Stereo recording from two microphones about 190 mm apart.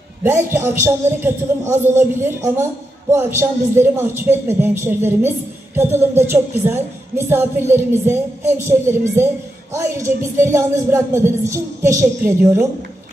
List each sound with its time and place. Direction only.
0.2 s a woman's voice: 15° right (ahead or behind)